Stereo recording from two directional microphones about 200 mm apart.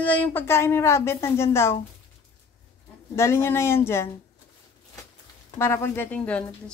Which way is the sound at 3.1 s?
15° left (ahead or behind).